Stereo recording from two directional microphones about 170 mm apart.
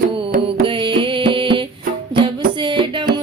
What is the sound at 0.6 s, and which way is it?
Music, 30° right (ahead or behind).